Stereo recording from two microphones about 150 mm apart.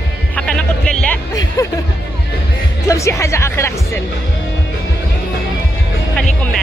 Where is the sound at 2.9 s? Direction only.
20° left (ahead or behind).